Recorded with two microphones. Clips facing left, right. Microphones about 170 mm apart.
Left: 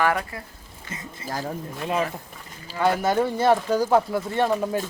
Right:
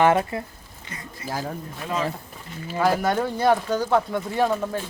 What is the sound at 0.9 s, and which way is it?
Speech, 25° left (ahead or behind).